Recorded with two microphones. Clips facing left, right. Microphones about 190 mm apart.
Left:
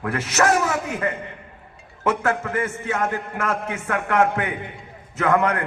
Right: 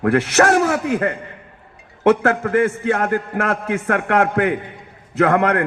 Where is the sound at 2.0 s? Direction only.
55° right (ahead or behind).